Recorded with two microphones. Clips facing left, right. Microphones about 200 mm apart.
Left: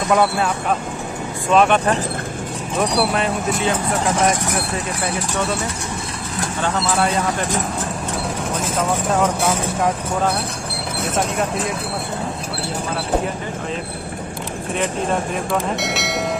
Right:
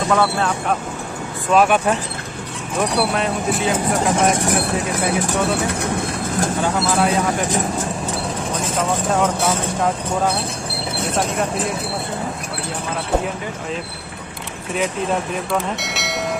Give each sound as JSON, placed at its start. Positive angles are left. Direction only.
{"t": 0.1, "sound": "speech", "side_deg": 15}
{"t": 1.5, "sound": "speech", "side_deg": -5}
{"t": 5.2, "sound": "speech", "side_deg": -55}
{"t": 6.6, "sound": "speech", "side_deg": -5}
{"t": 8.5, "sound": "speech", "side_deg": 0}
{"t": 15.3, "sound": "speech", "side_deg": 0}